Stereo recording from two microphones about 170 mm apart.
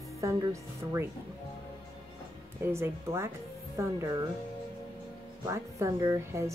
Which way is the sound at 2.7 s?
15° right (ahead or behind).